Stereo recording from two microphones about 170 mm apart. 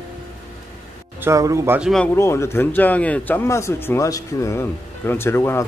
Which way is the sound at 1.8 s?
Centre (ahead or behind).